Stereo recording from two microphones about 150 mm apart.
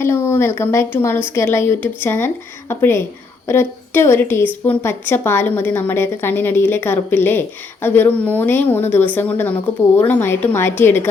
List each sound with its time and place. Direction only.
0.0 s a woman's voice: 15° left (ahead or behind)